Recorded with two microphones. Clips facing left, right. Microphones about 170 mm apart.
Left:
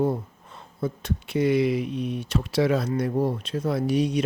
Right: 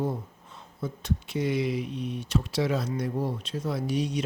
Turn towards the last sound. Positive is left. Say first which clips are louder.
# left 5 dB
turn(degrees=60)  # may be behind; listen again after turning